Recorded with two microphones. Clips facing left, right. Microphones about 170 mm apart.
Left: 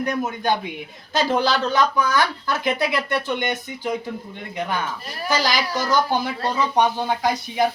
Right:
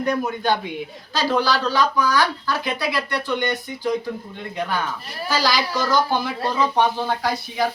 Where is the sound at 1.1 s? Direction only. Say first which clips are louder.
Left 1 dB; 20° left (ahead or behind).